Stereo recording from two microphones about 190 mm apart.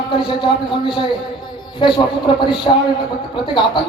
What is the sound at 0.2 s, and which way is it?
Speech, 25° left (ahead or behind).